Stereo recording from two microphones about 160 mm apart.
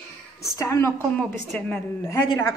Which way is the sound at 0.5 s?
20° left (ahead or behind).